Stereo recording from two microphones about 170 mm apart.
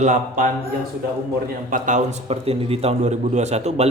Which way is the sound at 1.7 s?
45° right (ahead or behind).